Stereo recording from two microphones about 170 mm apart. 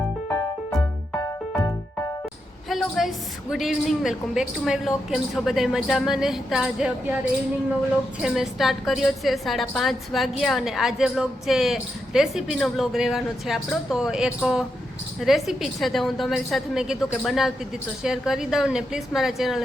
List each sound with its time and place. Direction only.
1.2 s music: 20° left (ahead or behind)
2.6 s a sound: centre (ahead or behind)
3.5 s a woman's voice: centre (ahead or behind)
8.2 s a woman's voice: centre (ahead or behind)